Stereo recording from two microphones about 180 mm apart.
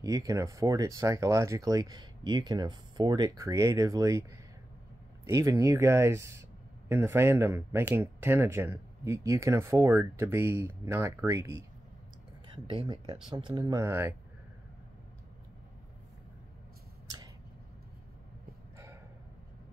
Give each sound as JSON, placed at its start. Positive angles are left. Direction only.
{"t": 0.0, "sound": "speech", "side_deg": -20}
{"t": 5.2, "sound": "speech", "side_deg": -15}
{"t": 12.6, "sound": "speech", "side_deg": -25}